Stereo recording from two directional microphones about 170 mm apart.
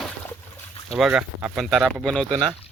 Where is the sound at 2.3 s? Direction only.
25° right (ahead or behind).